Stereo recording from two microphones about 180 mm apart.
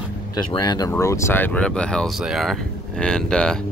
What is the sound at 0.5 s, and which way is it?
Speech, 20° left (ahead or behind).